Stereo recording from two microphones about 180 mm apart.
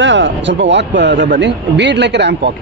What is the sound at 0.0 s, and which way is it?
A man's voice, 90° right.